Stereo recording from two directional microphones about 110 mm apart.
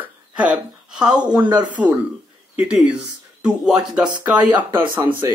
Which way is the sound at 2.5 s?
10° right (ahead or behind).